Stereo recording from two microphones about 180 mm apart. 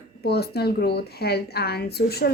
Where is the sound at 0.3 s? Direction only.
65° left (ahead or behind).